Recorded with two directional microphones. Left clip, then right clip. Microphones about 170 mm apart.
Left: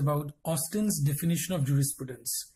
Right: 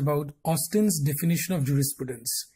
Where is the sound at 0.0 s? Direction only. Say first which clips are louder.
Right 4 dB; 20° right (ahead or behind).